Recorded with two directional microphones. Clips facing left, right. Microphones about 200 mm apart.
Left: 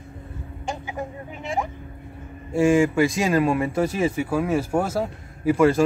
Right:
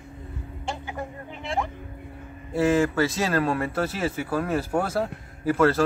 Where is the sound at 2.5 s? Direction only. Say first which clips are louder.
Left 3 dB; 10° left (ahead or behind).